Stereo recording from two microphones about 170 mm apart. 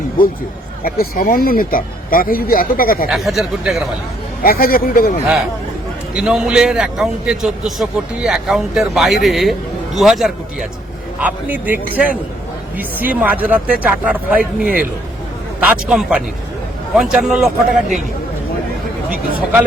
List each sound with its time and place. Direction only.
0.9 s speech: 60° left (ahead or behind)
3.1 s a man's voice: centre (ahead or behind)
4.4 s speech: 60° left (ahead or behind)
6.1 s a man's voice: 5° right (ahead or behind)